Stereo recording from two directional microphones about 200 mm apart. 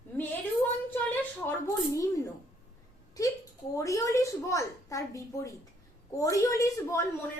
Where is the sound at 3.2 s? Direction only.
20° left (ahead or behind).